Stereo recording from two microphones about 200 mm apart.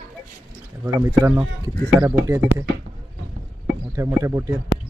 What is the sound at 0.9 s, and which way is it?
Speech, 15° right (ahead or behind).